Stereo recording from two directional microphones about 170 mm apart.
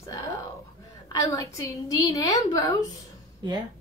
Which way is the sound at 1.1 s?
20° left (ahead or behind).